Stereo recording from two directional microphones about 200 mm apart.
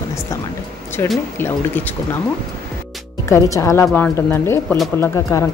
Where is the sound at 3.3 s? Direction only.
15° left (ahead or behind).